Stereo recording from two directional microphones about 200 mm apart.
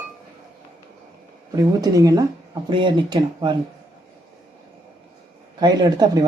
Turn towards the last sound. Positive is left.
turn(degrees=-20)  # may be behind; listen again after turning